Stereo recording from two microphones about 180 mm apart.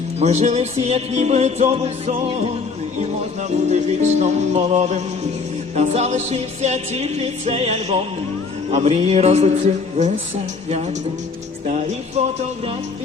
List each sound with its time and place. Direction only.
0.2 s music: 40° right (ahead or behind)
3.7 s music: 40° right (ahead or behind)
11.7 s music: 40° right (ahead or behind)